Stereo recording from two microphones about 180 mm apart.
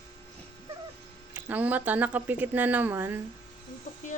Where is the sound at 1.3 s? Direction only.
10° right (ahead or behind).